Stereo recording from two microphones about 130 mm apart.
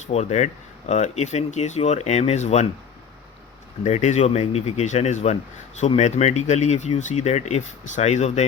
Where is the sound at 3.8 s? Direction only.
65° left (ahead or behind).